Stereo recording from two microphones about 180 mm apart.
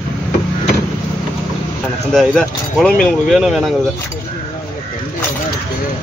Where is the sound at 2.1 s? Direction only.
Centre (ahead or behind).